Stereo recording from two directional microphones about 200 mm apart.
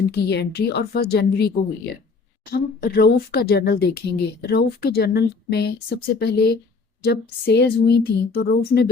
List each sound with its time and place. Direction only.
0.1 s speech: 55° left (ahead or behind)